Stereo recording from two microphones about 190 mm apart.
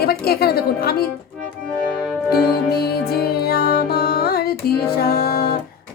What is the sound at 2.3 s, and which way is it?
Music, 55° left (ahead or behind).